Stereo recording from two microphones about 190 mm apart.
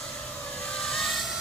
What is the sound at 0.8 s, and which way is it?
Vehicle, centre (ahead or behind).